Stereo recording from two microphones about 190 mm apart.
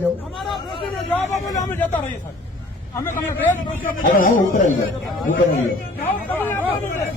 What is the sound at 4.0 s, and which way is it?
Speech, 45° left (ahead or behind).